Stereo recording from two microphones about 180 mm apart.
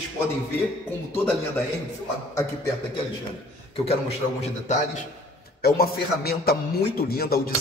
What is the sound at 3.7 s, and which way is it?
A man's voice, 35° left (ahead or behind).